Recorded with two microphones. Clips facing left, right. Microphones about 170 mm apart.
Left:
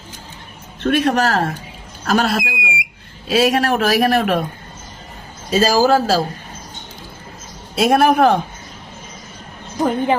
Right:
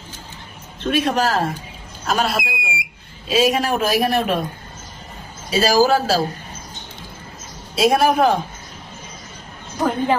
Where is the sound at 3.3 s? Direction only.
75° left (ahead or behind).